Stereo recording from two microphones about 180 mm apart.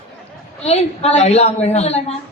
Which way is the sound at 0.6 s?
35° left (ahead or behind).